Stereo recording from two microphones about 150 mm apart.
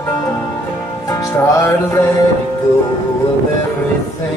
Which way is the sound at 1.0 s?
20° left (ahead or behind).